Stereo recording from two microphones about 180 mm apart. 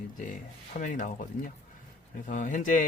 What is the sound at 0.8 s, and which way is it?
A man's voice, 45° left (ahead or behind).